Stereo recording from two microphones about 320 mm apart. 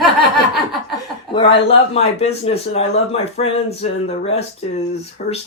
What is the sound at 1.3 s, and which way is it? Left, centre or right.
Speech, centre.